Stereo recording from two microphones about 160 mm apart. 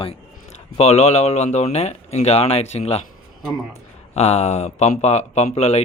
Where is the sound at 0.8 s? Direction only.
45° left (ahead or behind).